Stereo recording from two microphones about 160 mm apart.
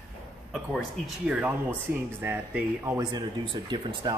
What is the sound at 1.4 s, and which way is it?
Speech, 10° right (ahead or behind).